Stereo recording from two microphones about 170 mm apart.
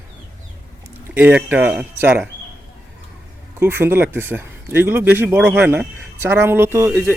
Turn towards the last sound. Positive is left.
turn(degrees=-15)  # may be behind; listen again after turning